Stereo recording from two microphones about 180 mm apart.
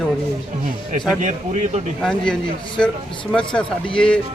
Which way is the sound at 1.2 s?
40° right (ahead or behind).